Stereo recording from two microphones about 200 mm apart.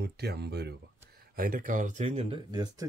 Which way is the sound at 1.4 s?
45° right (ahead or behind).